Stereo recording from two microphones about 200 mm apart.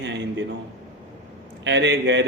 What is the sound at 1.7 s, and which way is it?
Mantra, 60° right (ahead or behind).